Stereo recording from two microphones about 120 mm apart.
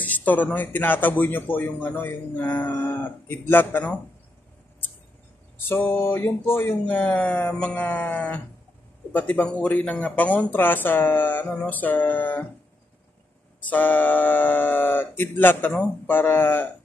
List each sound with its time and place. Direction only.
0.0 s speech: 15° left (ahead or behind)
5.6 s speech: 15° left (ahead or behind)
13.6 s speech: 15° left (ahead or behind)